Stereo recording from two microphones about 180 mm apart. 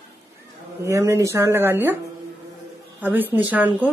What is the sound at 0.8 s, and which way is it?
A woman's voice, 15° right (ahead or behind).